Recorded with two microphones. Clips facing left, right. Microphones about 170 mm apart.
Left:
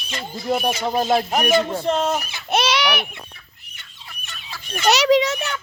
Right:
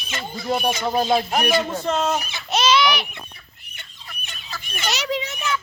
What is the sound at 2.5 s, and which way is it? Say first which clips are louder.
Speech: right 1 dB; 60° left (ahead or behind).